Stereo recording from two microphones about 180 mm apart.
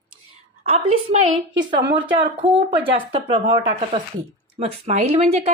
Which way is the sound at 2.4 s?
30° right (ahead or behind).